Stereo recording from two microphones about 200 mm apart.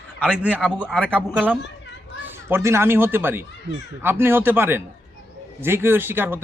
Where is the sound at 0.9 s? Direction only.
5° left (ahead or behind).